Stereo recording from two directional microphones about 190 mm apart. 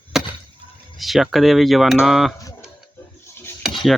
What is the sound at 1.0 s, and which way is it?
Speech, centre (ahead or behind).